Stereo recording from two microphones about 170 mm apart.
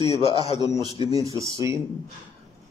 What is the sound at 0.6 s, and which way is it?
Speech, 25° right (ahead or behind).